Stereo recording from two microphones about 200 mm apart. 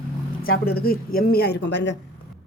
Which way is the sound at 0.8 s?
50° left (ahead or behind).